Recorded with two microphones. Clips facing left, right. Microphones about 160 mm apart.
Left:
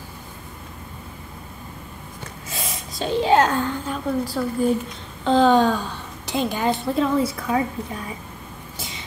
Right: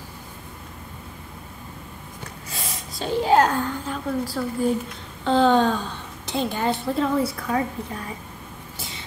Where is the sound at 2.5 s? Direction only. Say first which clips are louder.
Left 3 dB; 20° left (ahead or behind).